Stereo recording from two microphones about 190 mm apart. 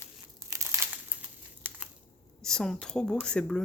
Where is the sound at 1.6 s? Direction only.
10° right (ahead or behind).